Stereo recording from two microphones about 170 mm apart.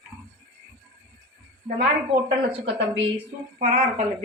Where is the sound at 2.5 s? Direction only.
30° right (ahead or behind).